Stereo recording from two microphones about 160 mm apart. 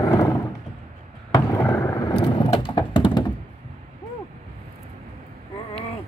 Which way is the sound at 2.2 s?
30° left (ahead or behind).